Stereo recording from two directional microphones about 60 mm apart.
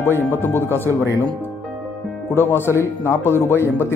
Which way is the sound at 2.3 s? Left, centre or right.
Left.